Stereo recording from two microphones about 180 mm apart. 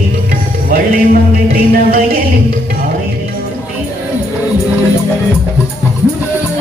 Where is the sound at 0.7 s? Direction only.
50° right (ahead or behind).